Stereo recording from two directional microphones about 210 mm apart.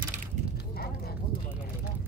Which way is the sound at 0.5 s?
50° left (ahead or behind).